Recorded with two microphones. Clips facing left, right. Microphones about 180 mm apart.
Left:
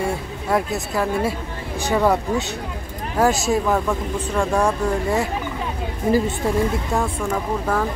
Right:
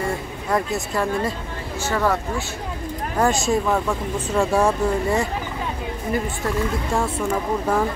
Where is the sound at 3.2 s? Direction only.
Centre (ahead or behind).